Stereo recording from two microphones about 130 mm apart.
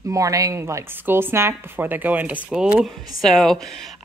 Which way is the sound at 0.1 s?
25° right (ahead or behind).